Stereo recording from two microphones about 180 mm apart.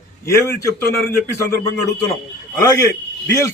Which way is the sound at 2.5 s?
15° left (ahead or behind).